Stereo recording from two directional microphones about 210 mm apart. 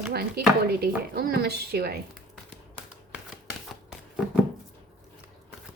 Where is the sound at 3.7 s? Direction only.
Centre (ahead or behind).